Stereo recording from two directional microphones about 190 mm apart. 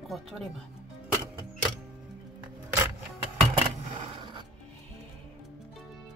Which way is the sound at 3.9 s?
25° right (ahead or behind).